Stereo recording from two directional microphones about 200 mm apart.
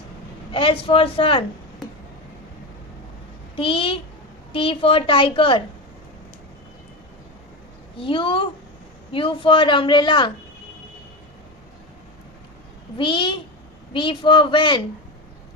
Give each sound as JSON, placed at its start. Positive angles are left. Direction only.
{"t": 0.5, "sound": "a woman's voice", "side_deg": 25}
{"t": 3.5, "sound": "a woman's voice", "side_deg": 25}
{"t": 8.0, "sound": "a woman's voice", "side_deg": 25}
{"t": 12.9, "sound": "a woman's voice", "side_deg": 25}